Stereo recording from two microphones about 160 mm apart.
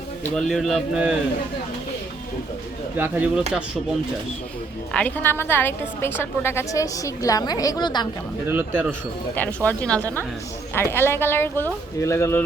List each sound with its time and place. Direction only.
0.3 s speech: centre (ahead or behind)
3.0 s speech: 10° right (ahead or behind)
4.9 s a woman's voice: 10° left (ahead or behind); by 8.0 s 25° left (ahead or behind)
8.4 s speech: 15° right (ahead or behind)
9.3 s a woman's voice: 10° left (ahead or behind)